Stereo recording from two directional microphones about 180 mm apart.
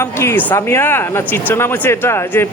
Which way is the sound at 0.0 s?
15° left (ahead or behind).